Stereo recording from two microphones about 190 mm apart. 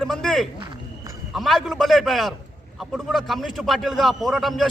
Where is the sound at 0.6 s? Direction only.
25° right (ahead or behind).